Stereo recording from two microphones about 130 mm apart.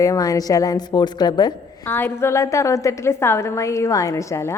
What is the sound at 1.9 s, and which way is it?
A woman's voice, 20° left (ahead or behind).